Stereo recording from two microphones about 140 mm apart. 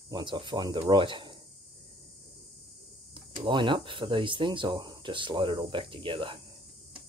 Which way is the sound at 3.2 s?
35° right (ahead or behind).